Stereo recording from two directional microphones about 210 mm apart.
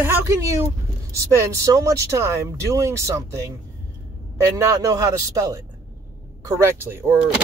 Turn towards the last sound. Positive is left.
turn(degrees=-10)  # may be behind; listen again after turning